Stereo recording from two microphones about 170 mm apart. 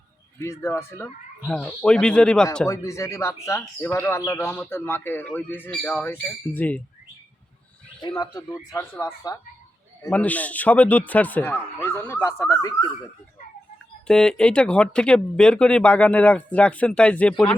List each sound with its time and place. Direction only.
0.3 s a man's voice: 15° left (ahead or behind)
2.6 s a man's voice: 15° left (ahead or behind)
8.2 s a man's voice: 25° left (ahead or behind)
14.1 s speech: 5° left (ahead or behind)